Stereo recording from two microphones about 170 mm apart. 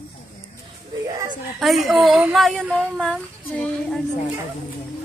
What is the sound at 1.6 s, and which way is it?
A woman's voice, centre (ahead or behind).